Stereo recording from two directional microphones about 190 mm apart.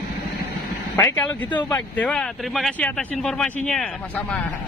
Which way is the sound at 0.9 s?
10° left (ahead or behind).